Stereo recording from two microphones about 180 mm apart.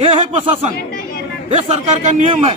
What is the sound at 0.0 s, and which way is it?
A man's voice, 30° right (ahead or behind).